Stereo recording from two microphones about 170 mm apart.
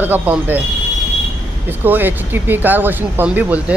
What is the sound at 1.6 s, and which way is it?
Speech, 10° right (ahead or behind).